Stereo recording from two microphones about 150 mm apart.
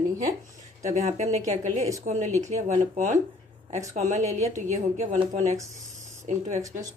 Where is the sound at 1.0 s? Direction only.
50° right (ahead or behind).